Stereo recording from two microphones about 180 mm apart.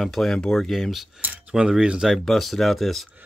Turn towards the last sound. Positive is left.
turn(degrees=0)  # may be behind; listen again after turning